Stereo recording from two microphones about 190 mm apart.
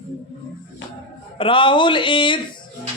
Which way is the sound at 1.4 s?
25° left (ahead or behind).